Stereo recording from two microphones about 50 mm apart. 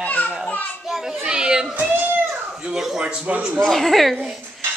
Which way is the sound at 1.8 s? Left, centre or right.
Right.